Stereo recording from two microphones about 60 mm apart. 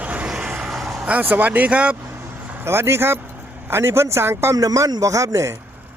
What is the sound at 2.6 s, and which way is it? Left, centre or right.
Speech, right.